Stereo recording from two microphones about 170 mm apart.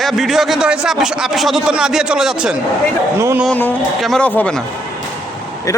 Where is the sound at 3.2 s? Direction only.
15° right (ahead or behind).